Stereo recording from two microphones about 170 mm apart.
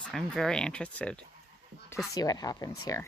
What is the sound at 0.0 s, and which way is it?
Speech, centre (ahead or behind).